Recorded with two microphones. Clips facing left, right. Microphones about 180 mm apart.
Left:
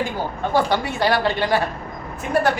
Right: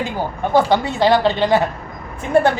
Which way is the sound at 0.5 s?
20° right (ahead or behind).